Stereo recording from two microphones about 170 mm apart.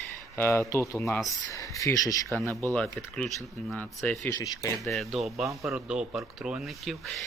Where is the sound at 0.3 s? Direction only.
15° left (ahead or behind).